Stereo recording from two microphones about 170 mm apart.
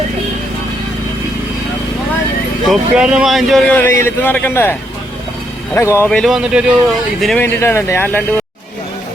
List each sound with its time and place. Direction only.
2.6 s speech: 5° right (ahead or behind); by 6.1 s 15° left (ahead or behind)
6.1 s speech: centre (ahead or behind)
7.4 s speech: 10° left (ahead or behind)